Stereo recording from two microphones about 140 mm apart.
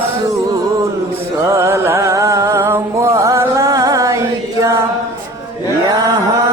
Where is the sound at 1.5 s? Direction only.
20° right (ahead or behind).